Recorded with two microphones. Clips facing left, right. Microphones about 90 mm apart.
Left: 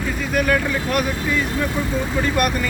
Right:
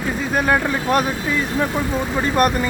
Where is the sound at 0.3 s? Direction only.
30° right (ahead or behind).